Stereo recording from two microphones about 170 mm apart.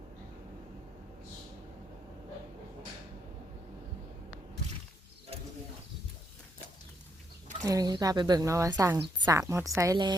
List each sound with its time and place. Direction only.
7.6 s a woman's voice: 20° right (ahead or behind)